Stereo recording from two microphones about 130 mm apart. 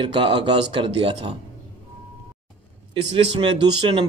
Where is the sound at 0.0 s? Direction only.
40° right (ahead or behind).